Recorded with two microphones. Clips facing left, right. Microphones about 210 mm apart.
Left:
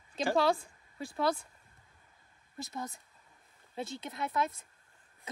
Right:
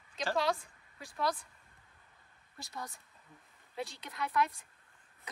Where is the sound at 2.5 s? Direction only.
20° left (ahead or behind).